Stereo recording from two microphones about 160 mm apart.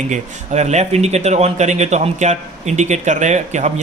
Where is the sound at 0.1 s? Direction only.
45° right (ahead or behind).